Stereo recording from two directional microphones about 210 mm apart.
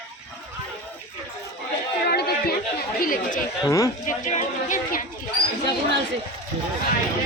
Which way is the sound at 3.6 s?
15° left (ahead or behind).